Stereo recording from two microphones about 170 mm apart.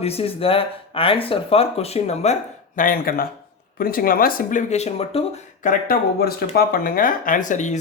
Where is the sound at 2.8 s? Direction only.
55° left (ahead or behind); by 5.4 s 35° left (ahead or behind).